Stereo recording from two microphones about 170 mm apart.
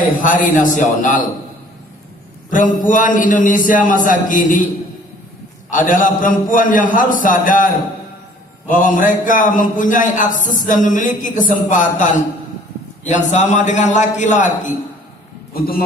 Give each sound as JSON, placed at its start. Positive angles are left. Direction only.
{"t": 0.2, "sound": "a man's voice", "side_deg": 50}
{"t": 2.5, "sound": "a man's voice", "side_deg": 50}
{"t": 5.7, "sound": "a man's voice", "side_deg": 50}